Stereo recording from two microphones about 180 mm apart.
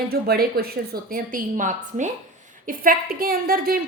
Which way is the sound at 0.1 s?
60° right (ahead or behind).